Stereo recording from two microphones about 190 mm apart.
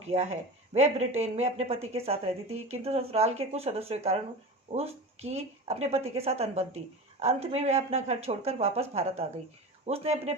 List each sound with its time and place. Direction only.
0.1 s speech: 35° right (ahead or behind)